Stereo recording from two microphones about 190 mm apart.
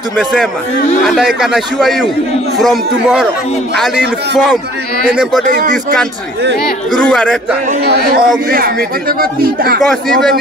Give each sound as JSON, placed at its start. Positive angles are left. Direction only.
{"t": 0.2, "sound": "a man's voice", "side_deg": 0}
{"t": 3.7, "sound": "a man's voice", "side_deg": 0}
{"t": 5.1, "sound": "a man's voice", "side_deg": -5}
{"t": 5.5, "sound": "speech", "side_deg": -45}
{"t": 7.1, "sound": "a man's voice", "side_deg": 5}
{"t": 7.8, "sound": "speech", "side_deg": -55}